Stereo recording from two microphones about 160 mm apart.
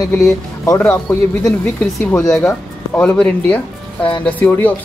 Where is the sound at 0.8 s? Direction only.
10° left (ahead or behind).